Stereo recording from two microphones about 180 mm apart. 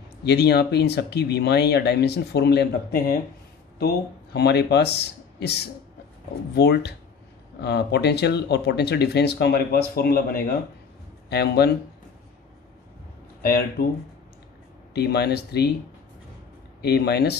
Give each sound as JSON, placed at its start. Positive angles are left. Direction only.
{"t": 0.2, "sound": "speech", "side_deg": 65}
{"t": 13.4, "sound": "speech", "side_deg": 60}
{"t": 15.0, "sound": "speech", "side_deg": 65}
{"t": 16.8, "sound": "speech", "side_deg": 65}